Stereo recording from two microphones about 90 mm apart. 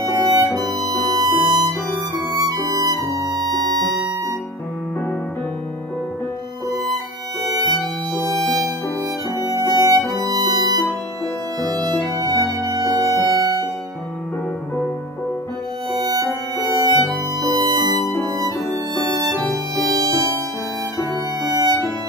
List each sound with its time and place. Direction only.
0.1 s music: 45° right (ahead or behind)
3.4 s music: centre (ahead or behind)
6.7 s violin: 45° right (ahead or behind)
9.5 s music: 45° right (ahead or behind)
16.0 s music: 45° right (ahead or behind)
21.4 s music: 45° right (ahead or behind)